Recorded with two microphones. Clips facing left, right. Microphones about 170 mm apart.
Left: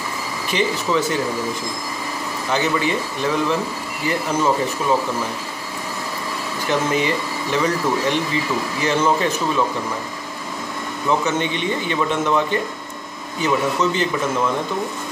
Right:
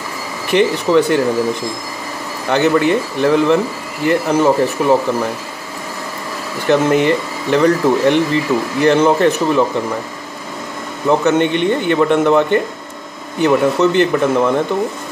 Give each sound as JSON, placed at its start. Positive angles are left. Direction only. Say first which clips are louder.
{"t": 0.5, "sound": "speech", "louder": "right 8 dB", "side_deg": -60}
{"t": 2.5, "sound": "speech", "louder": "right 8 dB", "side_deg": -60}
{"t": 6.7, "sound": "speech", "louder": "right 8 dB", "side_deg": -60}
{"t": 11.1, "sound": "speech", "louder": "right 7 dB", "side_deg": -60}